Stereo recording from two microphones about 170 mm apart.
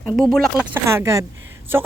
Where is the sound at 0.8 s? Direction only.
15° right (ahead or behind).